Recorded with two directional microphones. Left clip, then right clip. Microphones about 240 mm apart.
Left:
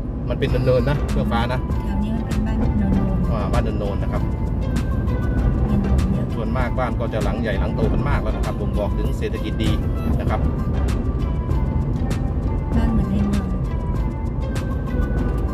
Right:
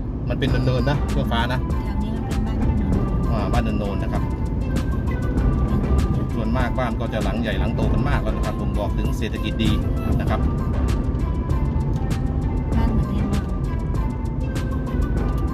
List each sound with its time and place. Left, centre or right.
0.4 s speech: centre